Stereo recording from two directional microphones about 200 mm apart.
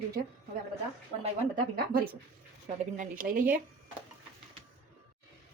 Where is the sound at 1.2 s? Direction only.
30° right (ahead or behind).